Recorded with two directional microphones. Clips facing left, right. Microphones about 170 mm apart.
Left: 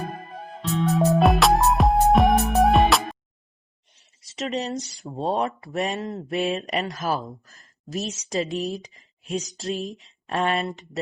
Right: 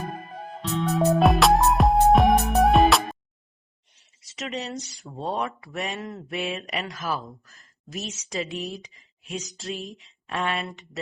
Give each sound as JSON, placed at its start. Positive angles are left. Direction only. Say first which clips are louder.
{"t": 0.9, "sound": "music", "louder": "left 1 dB", "side_deg": 0}
{"t": 4.4, "sound": "speech", "louder": "left 5 dB", "side_deg": 35}